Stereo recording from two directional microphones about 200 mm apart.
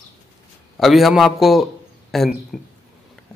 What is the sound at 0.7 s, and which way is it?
A man's voice, centre (ahead or behind).